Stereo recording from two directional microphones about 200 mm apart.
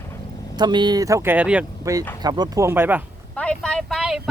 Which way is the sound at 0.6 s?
20° right (ahead or behind).